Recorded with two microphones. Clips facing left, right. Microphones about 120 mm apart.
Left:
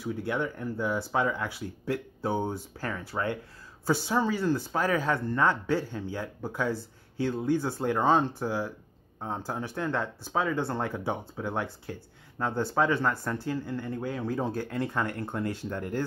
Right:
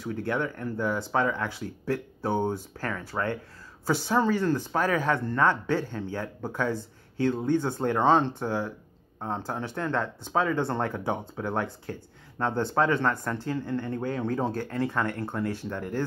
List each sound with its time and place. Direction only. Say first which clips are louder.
0.0 s speech: right 1 dB; 10° left (ahead or behind)